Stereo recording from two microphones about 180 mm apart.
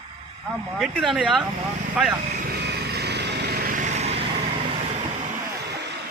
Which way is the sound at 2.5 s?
65° right (ahead or behind).